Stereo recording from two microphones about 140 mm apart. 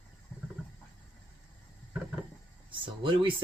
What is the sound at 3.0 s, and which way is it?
Speech, 35° right (ahead or behind).